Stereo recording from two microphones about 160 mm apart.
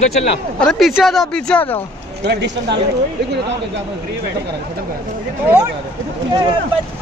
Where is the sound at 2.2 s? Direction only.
90° right.